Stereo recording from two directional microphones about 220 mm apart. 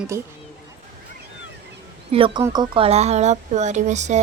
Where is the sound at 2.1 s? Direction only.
25° right (ahead or behind).